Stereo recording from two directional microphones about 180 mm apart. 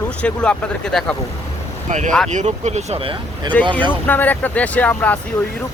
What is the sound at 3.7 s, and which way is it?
Speech, 10° left (ahead or behind).